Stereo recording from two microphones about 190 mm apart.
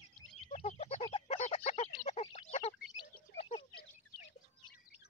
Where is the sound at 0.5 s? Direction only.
35° left (ahead or behind).